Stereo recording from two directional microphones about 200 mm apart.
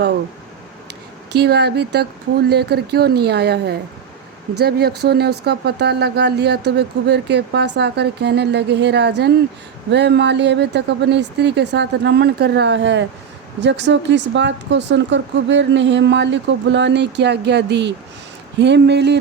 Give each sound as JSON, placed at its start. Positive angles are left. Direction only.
{"t": 1.3, "sound": "speech", "side_deg": -55}